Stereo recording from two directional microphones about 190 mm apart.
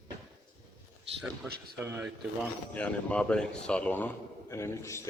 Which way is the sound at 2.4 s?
5° left (ahead or behind).